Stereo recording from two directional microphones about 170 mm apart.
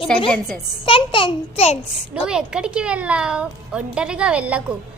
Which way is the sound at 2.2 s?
5° right (ahead or behind).